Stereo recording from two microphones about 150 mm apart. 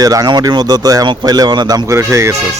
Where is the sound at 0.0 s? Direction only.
25° right (ahead or behind).